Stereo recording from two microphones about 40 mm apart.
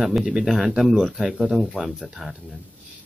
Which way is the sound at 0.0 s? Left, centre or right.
Centre.